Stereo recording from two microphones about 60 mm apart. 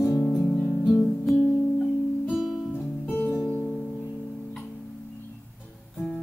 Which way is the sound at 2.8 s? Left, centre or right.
Left.